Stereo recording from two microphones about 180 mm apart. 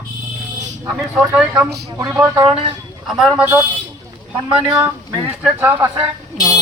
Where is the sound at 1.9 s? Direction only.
15° right (ahead or behind).